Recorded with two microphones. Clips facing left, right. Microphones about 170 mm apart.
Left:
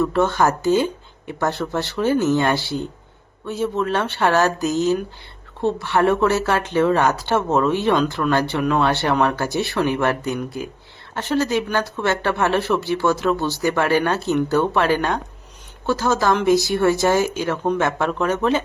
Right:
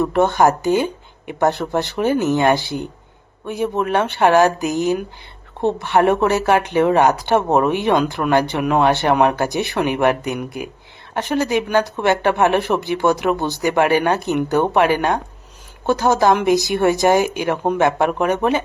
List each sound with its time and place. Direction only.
0.0 s speech: 20° right (ahead or behind)